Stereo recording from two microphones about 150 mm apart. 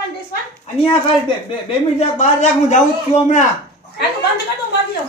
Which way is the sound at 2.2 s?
50° left (ahead or behind).